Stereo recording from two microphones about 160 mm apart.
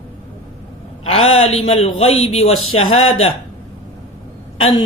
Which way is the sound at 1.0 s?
40° left (ahead or behind).